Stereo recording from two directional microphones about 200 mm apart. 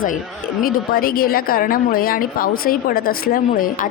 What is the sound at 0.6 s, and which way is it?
A woman's voice, 50° left (ahead or behind).